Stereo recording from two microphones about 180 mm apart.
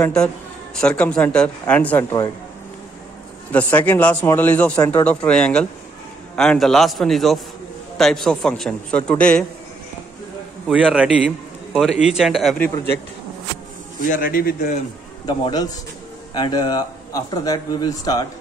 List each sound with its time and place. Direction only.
0.0 s a man's voice: 5° left (ahead or behind)
3.5 s a man's voice: 10° left (ahead or behind)
10.7 s a man's voice: 5° right (ahead or behind)
14.0 s a man's voice: 50° left (ahead or behind)
15.2 s speech: 20° left (ahead or behind)